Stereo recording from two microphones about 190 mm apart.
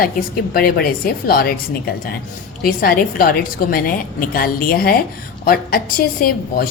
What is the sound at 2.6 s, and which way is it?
A woman's voice, 50° left (ahead or behind).